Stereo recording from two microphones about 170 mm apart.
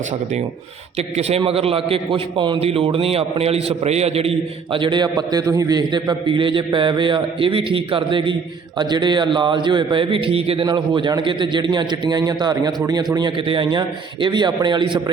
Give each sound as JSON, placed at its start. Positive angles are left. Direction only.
{"t": 0.9, "sound": "a man's voice", "side_deg": -40}